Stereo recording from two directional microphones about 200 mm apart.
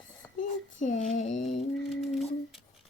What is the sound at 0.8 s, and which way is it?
Speech, 40° left (ahead or behind).